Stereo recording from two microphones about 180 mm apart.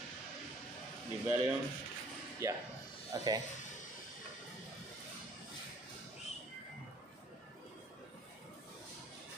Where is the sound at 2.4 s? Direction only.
15° right (ahead or behind).